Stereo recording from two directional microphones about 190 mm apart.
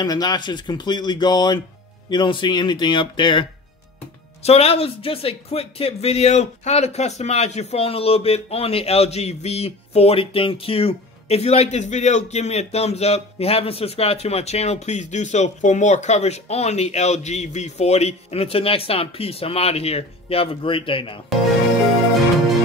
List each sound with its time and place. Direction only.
0.0 s speech: 20° left (ahead or behind)